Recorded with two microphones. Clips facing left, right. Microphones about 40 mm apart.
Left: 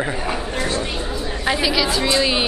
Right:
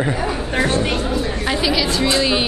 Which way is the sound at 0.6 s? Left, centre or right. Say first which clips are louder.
Right 7 dB; right.